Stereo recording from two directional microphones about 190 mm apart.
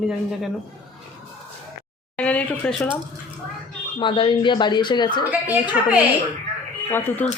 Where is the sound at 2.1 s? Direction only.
5° left (ahead or behind).